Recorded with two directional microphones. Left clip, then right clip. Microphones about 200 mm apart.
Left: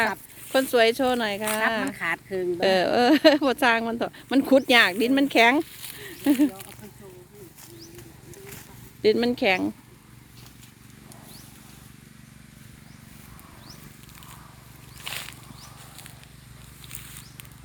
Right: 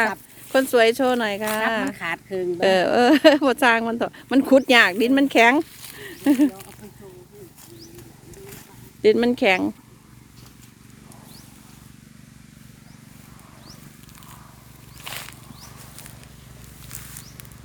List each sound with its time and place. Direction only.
0.0 s speech: 10° right (ahead or behind)
8.3 s vehicle: 15° left (ahead or behind)
9.0 s speech: 15° right (ahead or behind)
15.0 s wild animals: 10° right (ahead or behind)